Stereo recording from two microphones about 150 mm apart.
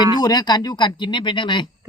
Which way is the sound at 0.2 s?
25° left (ahead or behind).